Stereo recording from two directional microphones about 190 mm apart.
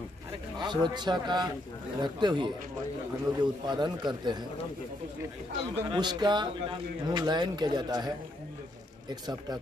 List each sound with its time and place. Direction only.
0.6 s a man's voice: 25° right (ahead or behind)
5.9 s a man's voice: 25° right (ahead or behind)
9.1 s a man's voice: 20° right (ahead or behind)